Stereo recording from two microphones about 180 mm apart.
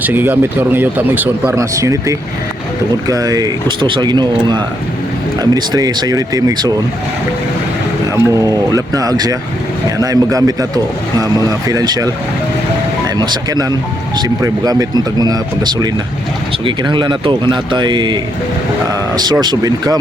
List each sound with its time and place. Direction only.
0.0 s speech: 10° right (ahead or behind)
8.1 s speech: 20° right (ahead or behind)
13.1 s speech: 25° right (ahead or behind)